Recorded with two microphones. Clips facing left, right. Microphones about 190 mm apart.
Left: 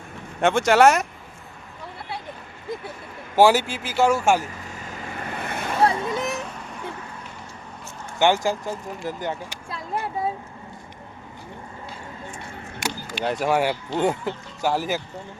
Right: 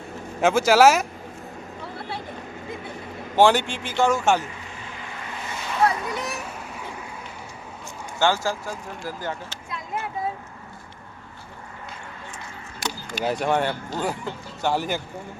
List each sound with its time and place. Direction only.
0.4 s speech: centre (ahead or behind)
3.3 s a man's voice: 5° left (ahead or behind)
5.3 s vehicle: 60° left (ahead or behind)
5.8 s a sound: 25° left (ahead or behind)
8.2 s a man's voice: 20° left (ahead or behind)
9.6 s speech: 35° left (ahead or behind)
12.8 s chop: 10° left (ahead or behind)
13.2 s speech: centre (ahead or behind)
14.0 s speech: 20° left (ahead or behind)
14.6 s speech: centre (ahead or behind)